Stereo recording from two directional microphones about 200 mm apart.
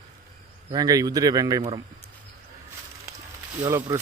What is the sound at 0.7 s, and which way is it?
Speech, 20° right (ahead or behind).